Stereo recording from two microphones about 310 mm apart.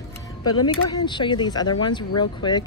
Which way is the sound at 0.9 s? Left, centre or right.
Centre.